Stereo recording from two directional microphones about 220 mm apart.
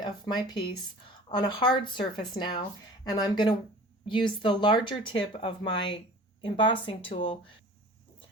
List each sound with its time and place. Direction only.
0.0 s speech: 20° left (ahead or behind)